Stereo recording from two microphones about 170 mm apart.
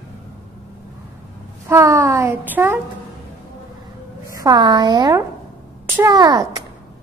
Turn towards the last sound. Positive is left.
turn(degrees=-20)  # may be behind; listen again after turning